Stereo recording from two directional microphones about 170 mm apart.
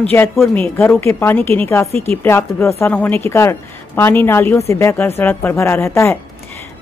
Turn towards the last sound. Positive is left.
turn(degrees=15)  # may be behind; listen again after turning